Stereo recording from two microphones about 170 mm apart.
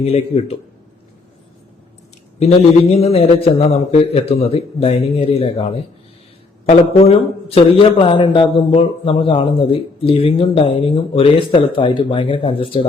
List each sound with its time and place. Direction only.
0.0 s a man's voice: 35° left (ahead or behind)
2.4 s a man's voice: 40° left (ahead or behind)